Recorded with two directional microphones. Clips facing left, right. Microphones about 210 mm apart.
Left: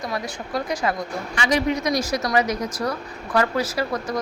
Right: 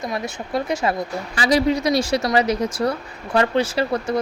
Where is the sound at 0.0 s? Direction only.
25° right (ahead or behind).